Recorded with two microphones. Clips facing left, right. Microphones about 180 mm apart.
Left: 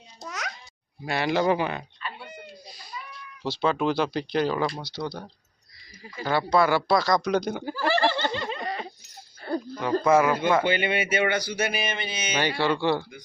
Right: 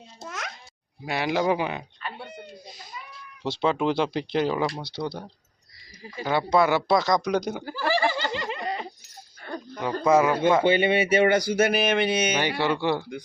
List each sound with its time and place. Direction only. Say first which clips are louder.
0.2 s babbling: left 1 dB; centre (ahead or behind)
1.0 s speech: left 1 dB; 15° right (ahead or behind)
2.6 s baby cry: right 2 dB; 20° right (ahead or behind)
3.4 s speech: right 1 dB; 20° right (ahead or behind)
6.2 s speech: right 1 dB; 20° right (ahead or behind)
7.8 s snicker: left 1 dB; 10° right (ahead or behind)
9.4 s a sound: left 6 dB; 25° left (ahead or behind)
10.0 s speech: right 2 dB; 20° right (ahead or behind)
11.1 s speech: right 5 dB; 40° right (ahead or behind); by 12.3 s 65° right (ahead or behind)
12.3 s speech: even; 15° right (ahead or behind)